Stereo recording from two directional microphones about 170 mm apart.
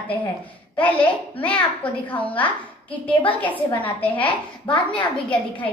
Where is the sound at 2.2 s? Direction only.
10° left (ahead or behind).